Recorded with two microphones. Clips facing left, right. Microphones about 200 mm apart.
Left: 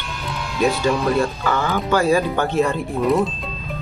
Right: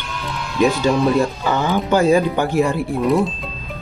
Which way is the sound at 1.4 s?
20° right (ahead or behind).